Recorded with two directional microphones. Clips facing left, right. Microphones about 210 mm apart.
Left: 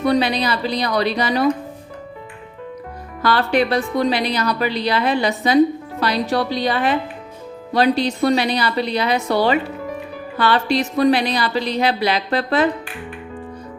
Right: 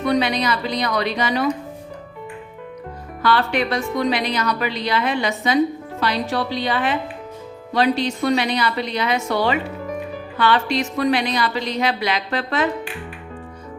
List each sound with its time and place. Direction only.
0.0 s a woman's voice: 35° left (ahead or behind)
3.2 s a woman's voice: 40° left (ahead or behind)